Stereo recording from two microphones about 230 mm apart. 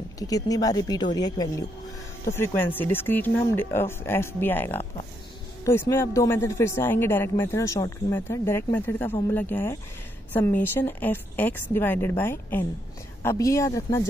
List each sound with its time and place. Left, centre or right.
0.2 s speech: centre